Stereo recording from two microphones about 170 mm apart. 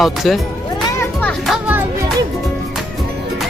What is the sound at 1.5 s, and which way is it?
Music, 10° right (ahead or behind).